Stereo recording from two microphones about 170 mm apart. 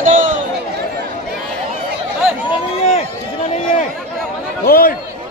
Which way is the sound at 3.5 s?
50° left (ahead or behind).